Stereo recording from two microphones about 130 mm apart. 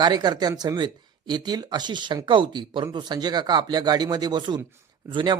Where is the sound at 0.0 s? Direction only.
35° right (ahead or behind).